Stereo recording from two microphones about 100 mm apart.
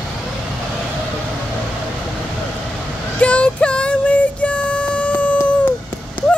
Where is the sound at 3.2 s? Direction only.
10° left (ahead or behind).